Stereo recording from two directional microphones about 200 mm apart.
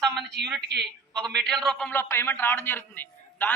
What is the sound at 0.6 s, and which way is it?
Speech, 55° right (ahead or behind).